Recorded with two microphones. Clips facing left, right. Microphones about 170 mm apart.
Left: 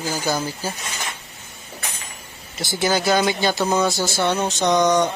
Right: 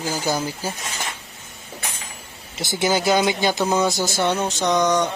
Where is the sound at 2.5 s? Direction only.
20° right (ahead or behind).